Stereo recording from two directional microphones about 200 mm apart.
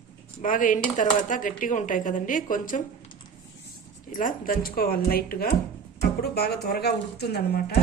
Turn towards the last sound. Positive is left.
turn(degrees=50)  # may be behind; listen again after turning